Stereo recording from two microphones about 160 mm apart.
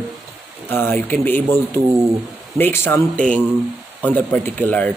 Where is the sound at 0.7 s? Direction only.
15° left (ahead or behind).